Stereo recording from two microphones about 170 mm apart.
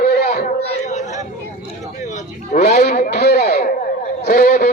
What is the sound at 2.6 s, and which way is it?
Speech, 65° left (ahead or behind).